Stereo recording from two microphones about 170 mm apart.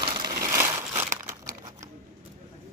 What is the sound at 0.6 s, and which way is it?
Crumpling, 15° right (ahead or behind).